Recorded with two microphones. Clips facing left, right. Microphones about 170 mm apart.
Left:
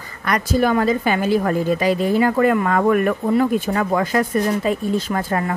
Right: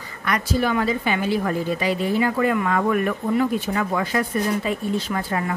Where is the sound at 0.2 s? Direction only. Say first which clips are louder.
Left 4 dB; 45° left (ahead or behind).